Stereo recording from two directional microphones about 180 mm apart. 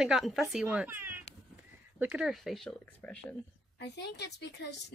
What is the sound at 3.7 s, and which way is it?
A woman's voice, 70° left (ahead or behind).